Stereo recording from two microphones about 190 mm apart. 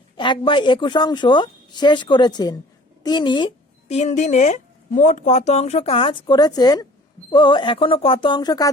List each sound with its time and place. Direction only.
0.2 s a woman's voice: 25° left (ahead or behind)